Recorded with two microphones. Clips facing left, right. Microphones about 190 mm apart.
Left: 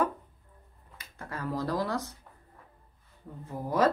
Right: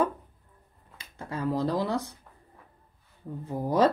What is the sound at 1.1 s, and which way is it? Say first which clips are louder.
Speech: right 5 dB; 20° right (ahead or behind).